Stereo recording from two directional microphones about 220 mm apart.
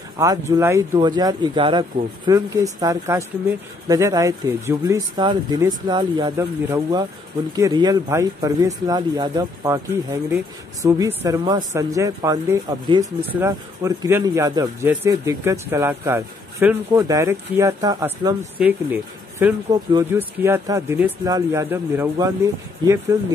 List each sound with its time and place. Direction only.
0.2 s speech: 15° right (ahead or behind)